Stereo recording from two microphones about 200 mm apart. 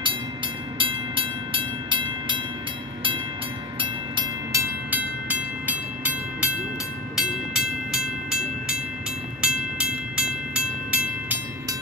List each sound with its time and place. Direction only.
0.7 s train: 25° right (ahead or behind)
3.8 s train: 25° right (ahead or behind)
4.9 s train: 5° right (ahead or behind)